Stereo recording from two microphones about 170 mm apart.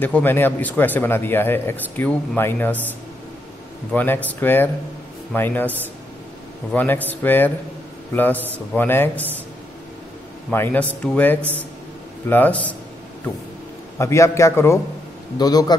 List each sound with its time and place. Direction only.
0.0 s speech: 10° left (ahead or behind)
3.9 s speech: 10° left (ahead or behind)
10.5 s speech: 10° left (ahead or behind)
13.9 s a man's voice: 15° left (ahead or behind)